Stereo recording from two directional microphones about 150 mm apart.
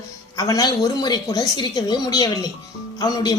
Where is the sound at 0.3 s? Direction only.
25° left (ahead or behind).